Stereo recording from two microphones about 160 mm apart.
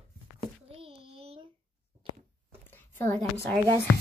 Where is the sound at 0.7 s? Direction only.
35° right (ahead or behind).